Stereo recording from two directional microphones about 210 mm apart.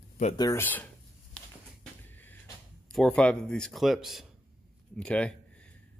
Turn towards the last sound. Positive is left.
turn(degrees=5)  # may be behind; listen again after turning